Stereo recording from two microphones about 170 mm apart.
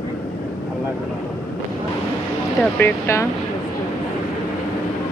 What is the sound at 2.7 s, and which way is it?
Speech, 10° left (ahead or behind).